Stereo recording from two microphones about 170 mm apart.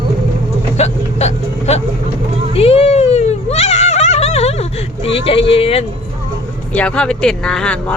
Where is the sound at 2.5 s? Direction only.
35° left (ahead or behind).